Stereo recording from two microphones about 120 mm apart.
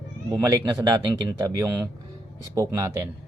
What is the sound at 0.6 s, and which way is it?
Speech, 35° right (ahead or behind).